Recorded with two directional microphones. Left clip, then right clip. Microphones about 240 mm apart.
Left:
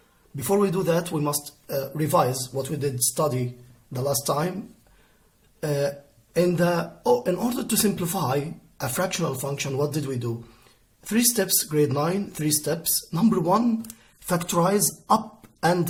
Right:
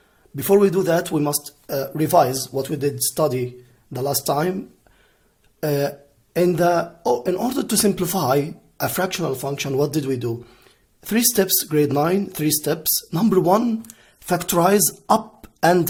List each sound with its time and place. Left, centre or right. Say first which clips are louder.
0.3 s speech: right 7 dB; right
5.5 s speech: right 4 dB; right